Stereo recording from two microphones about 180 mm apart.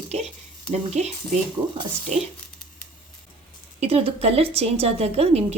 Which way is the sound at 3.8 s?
35° right (ahead or behind).